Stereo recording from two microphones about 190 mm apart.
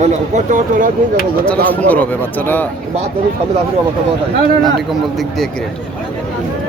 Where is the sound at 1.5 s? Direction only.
10° left (ahead or behind).